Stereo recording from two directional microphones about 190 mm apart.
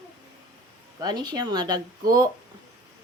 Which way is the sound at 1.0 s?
20° right (ahead or behind).